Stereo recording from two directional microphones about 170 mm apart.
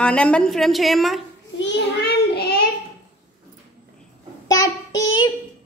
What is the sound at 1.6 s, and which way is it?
Child singing, 90° left.